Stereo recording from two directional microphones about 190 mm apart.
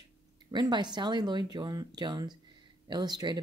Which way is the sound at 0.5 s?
25° right (ahead or behind).